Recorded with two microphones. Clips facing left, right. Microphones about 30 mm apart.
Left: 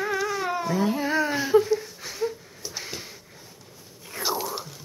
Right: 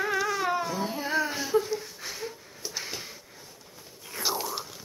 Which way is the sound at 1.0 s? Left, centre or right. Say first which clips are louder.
Left 4 dB; centre.